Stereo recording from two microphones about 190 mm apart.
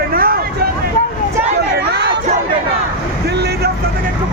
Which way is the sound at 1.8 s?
60° right (ahead or behind).